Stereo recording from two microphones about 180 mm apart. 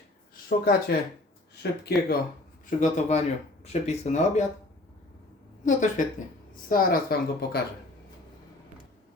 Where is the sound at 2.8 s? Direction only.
40° left (ahead or behind).